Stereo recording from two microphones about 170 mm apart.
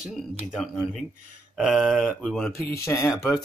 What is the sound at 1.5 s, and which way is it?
Speech, centre (ahead or behind).